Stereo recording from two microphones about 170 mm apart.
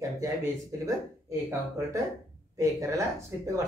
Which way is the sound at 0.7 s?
20° right (ahead or behind).